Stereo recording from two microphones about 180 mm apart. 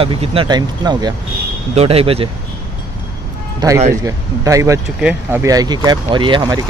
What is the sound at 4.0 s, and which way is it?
Speech, 20° right (ahead or behind).